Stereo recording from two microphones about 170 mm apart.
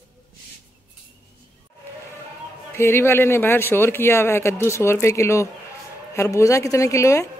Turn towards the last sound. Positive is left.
turn(degrees=20)  # may be behind; listen again after turning